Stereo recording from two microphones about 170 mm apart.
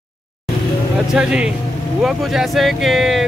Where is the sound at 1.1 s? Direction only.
5° right (ahead or behind).